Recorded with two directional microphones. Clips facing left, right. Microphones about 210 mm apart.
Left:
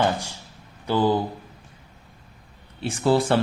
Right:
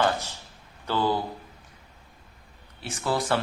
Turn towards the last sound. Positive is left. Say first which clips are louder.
# left 7 dB
turn(degrees=30)  # may be behind; listen again after turning